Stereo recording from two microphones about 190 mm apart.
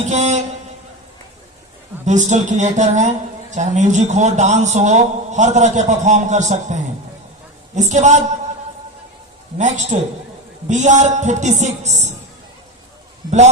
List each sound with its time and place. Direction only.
0.0 s a sound: 35° right (ahead or behind)
2.0 s a man's voice: 40° right (ahead or behind)
9.6 s a man's voice: 40° right (ahead or behind)